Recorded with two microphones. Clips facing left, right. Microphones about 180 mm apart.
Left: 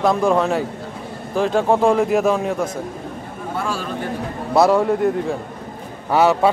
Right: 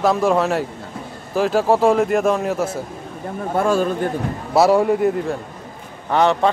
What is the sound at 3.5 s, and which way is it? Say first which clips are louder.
Speech: right 8 dB; 50° right (ahead or behind).